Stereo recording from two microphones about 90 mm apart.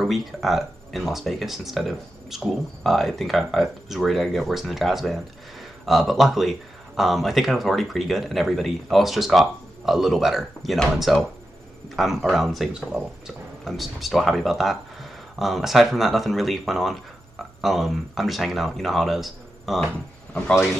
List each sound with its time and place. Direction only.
0.0 s speech: centre (ahead or behind)